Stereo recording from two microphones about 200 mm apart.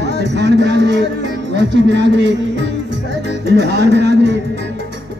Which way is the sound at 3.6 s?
55° right (ahead or behind).